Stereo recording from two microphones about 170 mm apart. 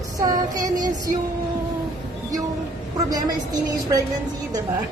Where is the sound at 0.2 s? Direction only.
20° right (ahead or behind).